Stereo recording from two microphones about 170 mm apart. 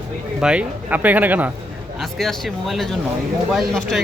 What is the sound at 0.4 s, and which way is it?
Speech, 10° right (ahead or behind).